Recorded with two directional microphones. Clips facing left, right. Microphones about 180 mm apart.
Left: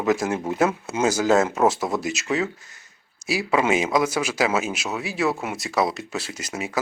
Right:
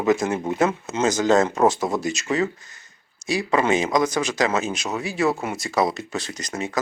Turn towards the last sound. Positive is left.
turn(degrees=5)  # may be behind; listen again after turning